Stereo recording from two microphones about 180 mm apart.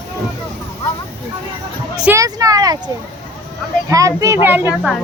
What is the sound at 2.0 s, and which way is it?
A child's voice, 20° right (ahead or behind).